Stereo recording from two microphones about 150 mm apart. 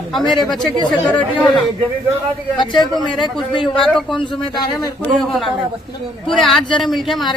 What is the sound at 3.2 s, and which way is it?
Speech, 30° left (ahead or behind).